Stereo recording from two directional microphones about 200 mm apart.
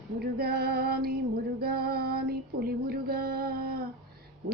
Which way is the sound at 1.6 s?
50° right (ahead or behind).